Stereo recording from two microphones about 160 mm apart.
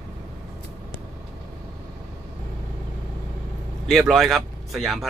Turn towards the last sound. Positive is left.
turn(degrees=0)  # may be behind; listen again after turning